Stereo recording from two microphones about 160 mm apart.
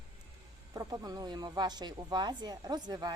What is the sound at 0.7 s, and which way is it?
Speech, 20° right (ahead or behind).